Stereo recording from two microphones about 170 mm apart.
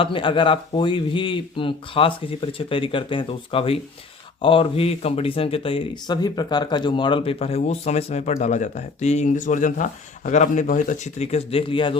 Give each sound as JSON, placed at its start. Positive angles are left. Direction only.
{"t": 0.0, "sound": "speech", "side_deg": 30}